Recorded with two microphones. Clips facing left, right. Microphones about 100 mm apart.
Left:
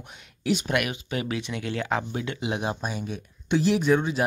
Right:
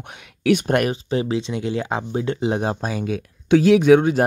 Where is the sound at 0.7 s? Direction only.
30° right (ahead or behind).